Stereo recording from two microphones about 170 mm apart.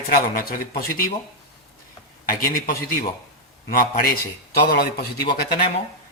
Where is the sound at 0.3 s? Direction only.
60° left (ahead or behind).